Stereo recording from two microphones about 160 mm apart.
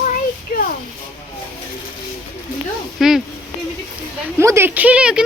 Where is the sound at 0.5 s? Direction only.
60° left (ahead or behind).